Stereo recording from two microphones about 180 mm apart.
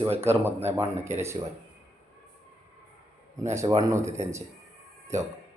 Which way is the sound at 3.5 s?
15° right (ahead or behind).